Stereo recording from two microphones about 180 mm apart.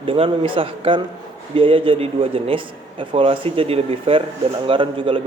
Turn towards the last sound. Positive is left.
turn(degrees=-30)  # may be behind; listen again after turning